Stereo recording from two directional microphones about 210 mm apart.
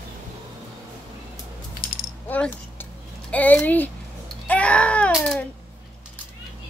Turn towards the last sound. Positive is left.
turn(degrees=5)  # may be behind; listen again after turning